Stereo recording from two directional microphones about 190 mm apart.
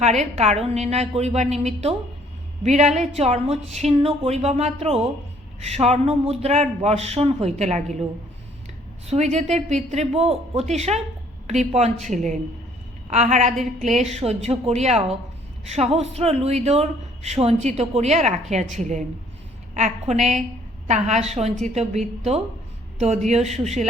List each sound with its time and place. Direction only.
0.0 s speech: 35° right (ahead or behind)
9.0 s a woman's voice: 35° right (ahead or behind)